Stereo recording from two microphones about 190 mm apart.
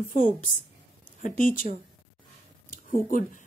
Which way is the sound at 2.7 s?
45° left (ahead or behind).